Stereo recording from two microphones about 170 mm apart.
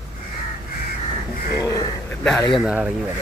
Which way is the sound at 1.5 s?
20° left (ahead or behind).